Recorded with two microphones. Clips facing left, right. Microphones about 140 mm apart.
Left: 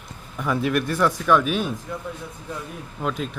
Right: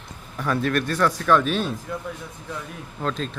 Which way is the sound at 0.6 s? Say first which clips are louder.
Left 1 dB; 20° left (ahead or behind).